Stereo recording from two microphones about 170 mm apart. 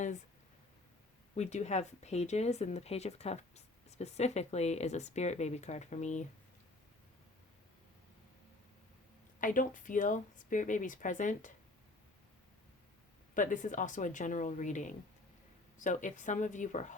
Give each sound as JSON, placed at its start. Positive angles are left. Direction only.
{"t": 1.4, "sound": "speech", "side_deg": 40}
{"t": 9.4, "sound": "speech", "side_deg": 50}
{"t": 13.3, "sound": "speech", "side_deg": 50}